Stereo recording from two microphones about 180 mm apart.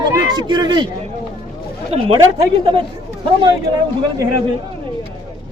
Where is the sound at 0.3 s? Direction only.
25° right (ahead or behind).